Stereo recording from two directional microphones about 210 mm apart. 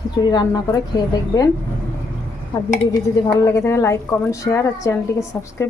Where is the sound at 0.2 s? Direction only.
20° left (ahead or behind).